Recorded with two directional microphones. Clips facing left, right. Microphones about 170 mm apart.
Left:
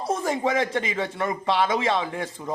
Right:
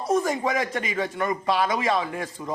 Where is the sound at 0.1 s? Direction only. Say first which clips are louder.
Right 1 dB; 25° left (ahead or behind).